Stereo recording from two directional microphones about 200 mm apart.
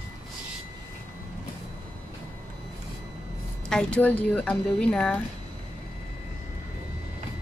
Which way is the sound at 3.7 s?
5° left (ahead or behind).